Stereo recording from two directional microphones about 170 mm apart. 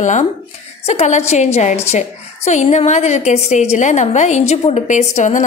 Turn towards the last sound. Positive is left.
turn(degrees=45)  # may be behind; listen again after turning